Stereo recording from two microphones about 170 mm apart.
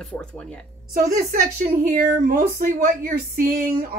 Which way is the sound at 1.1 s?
55° right (ahead or behind).